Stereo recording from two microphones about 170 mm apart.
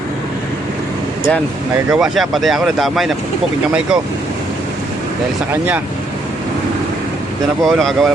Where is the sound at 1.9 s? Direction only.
Centre (ahead or behind).